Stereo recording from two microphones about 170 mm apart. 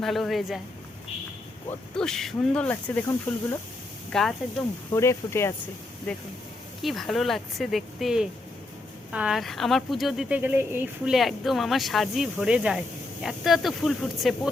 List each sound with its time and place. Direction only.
0.0 s speech: centre (ahead or behind)
2.0 s speech: 5° left (ahead or behind)
4.9 s speech: 15° left (ahead or behind); by 11.1 s 10° right (ahead or behind)
11.1 s speech: centre (ahead or behind)